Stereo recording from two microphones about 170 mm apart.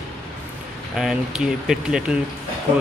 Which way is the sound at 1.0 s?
Centre (ahead or behind).